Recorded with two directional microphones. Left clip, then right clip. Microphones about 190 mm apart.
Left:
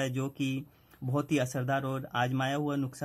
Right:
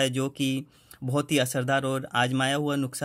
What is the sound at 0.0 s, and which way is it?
Speech, 35° right (ahead or behind).